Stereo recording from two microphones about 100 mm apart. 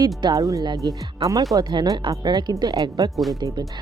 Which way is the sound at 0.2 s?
40° right (ahead or behind).